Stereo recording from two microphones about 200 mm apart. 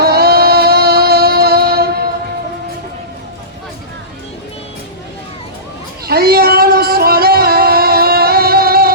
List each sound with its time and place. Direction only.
0.0 s music: 50° right (ahead or behind)
6.1 s music: 50° right (ahead or behind)